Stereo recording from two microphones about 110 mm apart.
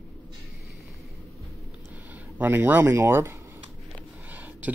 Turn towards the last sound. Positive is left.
turn(degrees=-15)  # may be behind; listen again after turning